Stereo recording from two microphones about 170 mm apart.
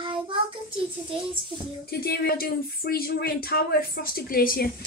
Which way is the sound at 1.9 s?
65° left (ahead or behind).